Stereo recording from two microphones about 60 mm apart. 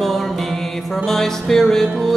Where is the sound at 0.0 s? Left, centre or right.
Centre.